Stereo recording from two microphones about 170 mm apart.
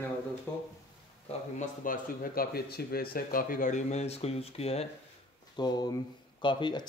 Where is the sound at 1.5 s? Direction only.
55° left (ahead or behind).